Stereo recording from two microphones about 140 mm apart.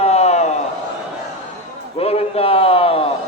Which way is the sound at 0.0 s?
50° left (ahead or behind).